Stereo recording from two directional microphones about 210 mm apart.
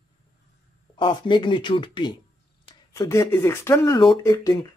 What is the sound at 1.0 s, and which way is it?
Speech, 20° left (ahead or behind).